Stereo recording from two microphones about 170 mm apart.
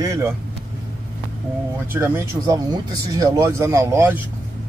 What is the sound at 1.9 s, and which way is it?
Speech, 15° right (ahead or behind).